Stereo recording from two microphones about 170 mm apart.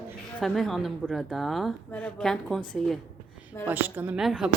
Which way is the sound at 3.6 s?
10° right (ahead or behind).